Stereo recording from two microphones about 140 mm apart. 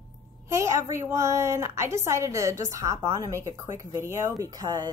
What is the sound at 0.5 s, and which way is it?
A woman's voice, 20° right (ahead or behind).